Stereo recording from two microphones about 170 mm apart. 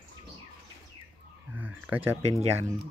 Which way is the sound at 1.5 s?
10° right (ahead or behind).